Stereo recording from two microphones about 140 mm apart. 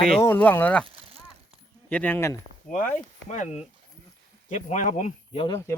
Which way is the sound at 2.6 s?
65° left (ahead or behind).